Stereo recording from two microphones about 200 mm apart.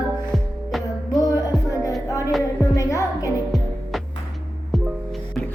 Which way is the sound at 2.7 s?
15° left (ahead or behind).